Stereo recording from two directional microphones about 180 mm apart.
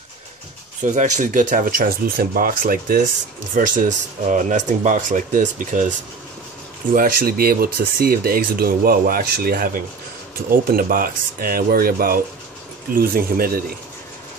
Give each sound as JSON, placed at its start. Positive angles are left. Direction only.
{"t": 0.8, "sound": "speech", "side_deg": -40}